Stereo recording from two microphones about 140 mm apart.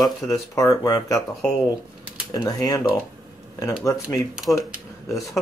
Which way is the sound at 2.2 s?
25° left (ahead or behind).